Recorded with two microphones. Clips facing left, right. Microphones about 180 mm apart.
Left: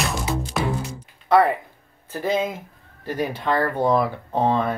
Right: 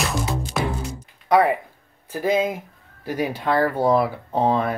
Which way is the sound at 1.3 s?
10° right (ahead or behind).